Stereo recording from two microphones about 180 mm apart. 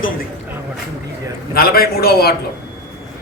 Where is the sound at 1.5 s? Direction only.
55° left (ahead or behind).